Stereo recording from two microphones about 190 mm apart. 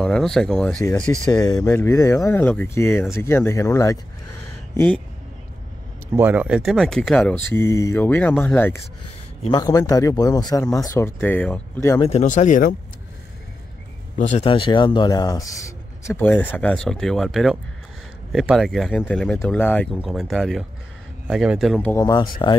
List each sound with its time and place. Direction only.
0.0 s speech: 5° left (ahead or behind)
6.1 s speech: 10° right (ahead or behind); by 12.0 s 10° left (ahead or behind)
12.0 s speech: 35° left (ahead or behind)
14.1 s speech: 40° left (ahead or behind)
14.5 s speech: 25° left (ahead or behind); by 21.8 s 5° right (ahead or behind)
21.8 s speech: 15° left (ahead or behind)